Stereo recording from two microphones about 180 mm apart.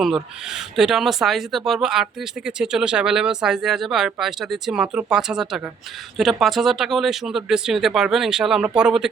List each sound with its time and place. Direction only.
0.0 s speech: centre (ahead or behind)